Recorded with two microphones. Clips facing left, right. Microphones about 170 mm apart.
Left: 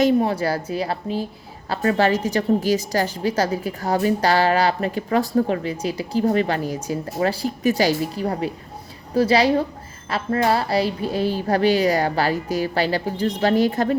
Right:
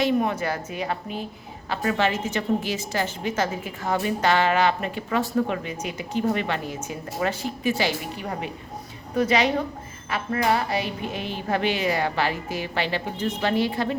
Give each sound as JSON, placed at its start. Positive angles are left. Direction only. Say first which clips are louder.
{"t": 0.0, "sound": "a woman's voice", "louder": "left 5 dB", "side_deg": 30}